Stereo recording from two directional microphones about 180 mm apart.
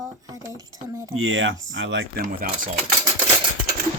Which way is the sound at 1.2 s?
90° right.